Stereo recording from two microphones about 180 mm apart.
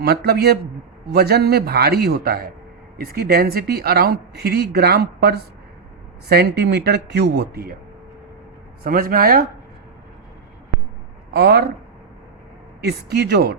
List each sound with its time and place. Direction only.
0.0 s speech: 65° right (ahead or behind)
8.8 s speech: 55° right (ahead or behind)
11.3 s speech: 60° right (ahead or behind)
12.8 s speech: 65° right (ahead or behind)